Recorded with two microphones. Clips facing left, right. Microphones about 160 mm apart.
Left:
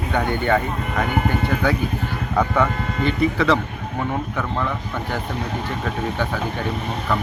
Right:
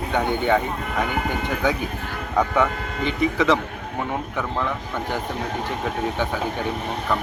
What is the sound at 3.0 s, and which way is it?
Speech, 15° right (ahead or behind).